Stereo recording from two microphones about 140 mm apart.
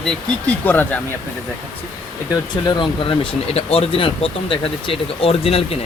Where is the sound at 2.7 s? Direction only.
35° left (ahead or behind).